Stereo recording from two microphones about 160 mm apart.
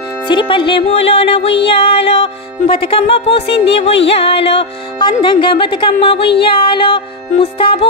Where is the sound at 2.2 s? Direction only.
35° left (ahead or behind).